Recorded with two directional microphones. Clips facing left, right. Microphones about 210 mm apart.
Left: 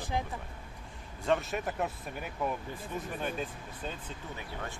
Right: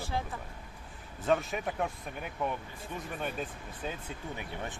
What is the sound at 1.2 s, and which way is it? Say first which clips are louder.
Speech: right 1 dB; centre (ahead or behind).